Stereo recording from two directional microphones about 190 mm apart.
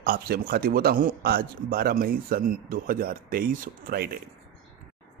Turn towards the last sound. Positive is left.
turn(degrees=-50)  # may be behind; listen again after turning